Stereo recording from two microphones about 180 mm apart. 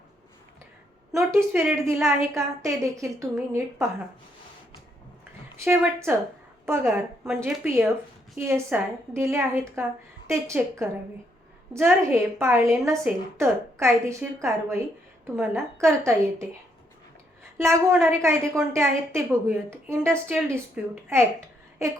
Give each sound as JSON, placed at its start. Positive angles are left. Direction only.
{"t": 1.1, "sound": "a woman's voice", "side_deg": -15}
{"t": 5.6, "sound": "a woman's voice", "side_deg": -15}
{"t": 17.6, "sound": "a woman's voice", "side_deg": -15}